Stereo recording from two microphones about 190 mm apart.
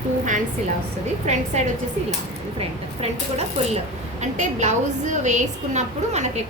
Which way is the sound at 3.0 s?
35° right (ahead or behind).